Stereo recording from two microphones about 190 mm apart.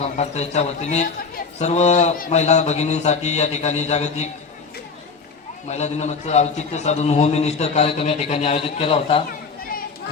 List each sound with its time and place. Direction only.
0.0 s a man's voice: 35° left (ahead or behind)
5.6 s a man's voice: 35° left (ahead or behind)